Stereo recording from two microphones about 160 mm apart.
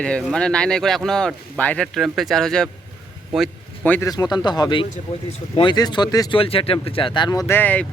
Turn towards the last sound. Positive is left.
turn(degrees=10)  # may be behind; listen again after turning